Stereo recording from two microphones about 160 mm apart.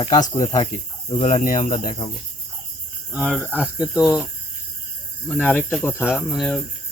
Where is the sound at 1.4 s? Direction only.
50° left (ahead or behind).